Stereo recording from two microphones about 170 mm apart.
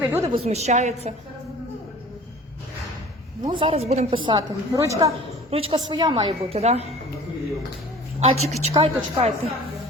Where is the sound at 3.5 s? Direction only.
30° right (ahead or behind).